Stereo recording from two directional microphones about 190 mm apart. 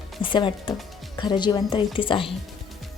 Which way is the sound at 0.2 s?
25° left (ahead or behind).